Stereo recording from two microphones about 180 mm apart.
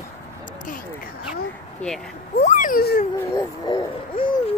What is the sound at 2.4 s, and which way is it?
Speech, 45° left (ahead or behind).